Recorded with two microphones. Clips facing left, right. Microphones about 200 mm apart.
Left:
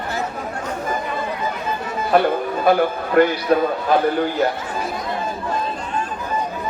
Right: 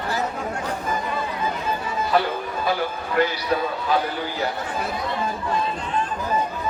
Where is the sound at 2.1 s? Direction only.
55° left (ahead or behind).